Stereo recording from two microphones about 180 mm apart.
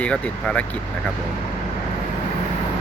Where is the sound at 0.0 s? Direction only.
5° left (ahead or behind).